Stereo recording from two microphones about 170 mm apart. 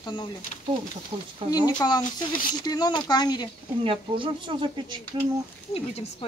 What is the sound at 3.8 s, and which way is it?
Speech, 30° right (ahead or behind).